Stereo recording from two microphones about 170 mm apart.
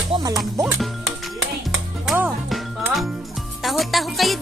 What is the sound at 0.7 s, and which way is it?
Music, centre (ahead or behind).